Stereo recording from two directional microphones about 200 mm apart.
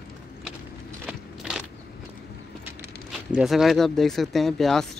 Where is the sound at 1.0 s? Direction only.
5° right (ahead or behind).